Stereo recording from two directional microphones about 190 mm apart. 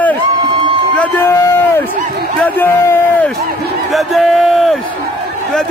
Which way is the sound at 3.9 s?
Centre (ahead or behind).